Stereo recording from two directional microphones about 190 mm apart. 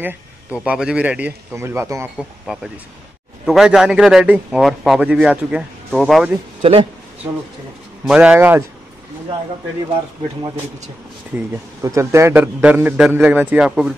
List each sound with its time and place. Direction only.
0.0 s a man's voice: 10° right (ahead or behind)
2.4 s a man's voice: centre (ahead or behind)
6.6 s a man's voice: 30° right (ahead or behind)
8.0 s a man's voice: 5° right (ahead or behind)
11.3 s a man's voice: 15° right (ahead or behind)